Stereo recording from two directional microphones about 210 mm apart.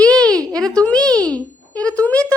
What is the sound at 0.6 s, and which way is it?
A woman's voice, 5° left (ahead or behind).